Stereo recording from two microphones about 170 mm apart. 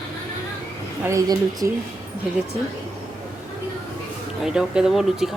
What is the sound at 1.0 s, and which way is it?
Speech, 20° right (ahead or behind).